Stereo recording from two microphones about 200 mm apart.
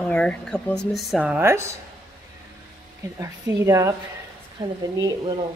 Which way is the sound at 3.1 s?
15° right (ahead or behind).